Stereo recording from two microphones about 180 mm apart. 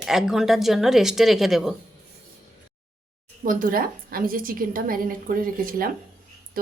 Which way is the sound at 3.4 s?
50° right (ahead or behind).